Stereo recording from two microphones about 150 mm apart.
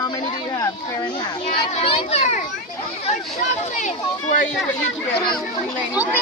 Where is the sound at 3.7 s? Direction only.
55° left (ahead or behind).